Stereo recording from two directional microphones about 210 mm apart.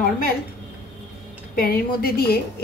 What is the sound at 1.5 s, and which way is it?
Speech, 45° left (ahead or behind).